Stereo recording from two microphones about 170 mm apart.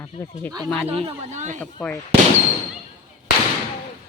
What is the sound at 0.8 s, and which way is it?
Speech, 35° right (ahead or behind).